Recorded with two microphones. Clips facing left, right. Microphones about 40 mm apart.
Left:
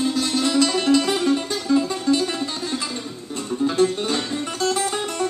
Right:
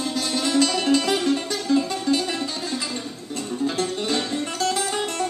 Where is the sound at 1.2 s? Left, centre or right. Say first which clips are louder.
Left 2 dB; left.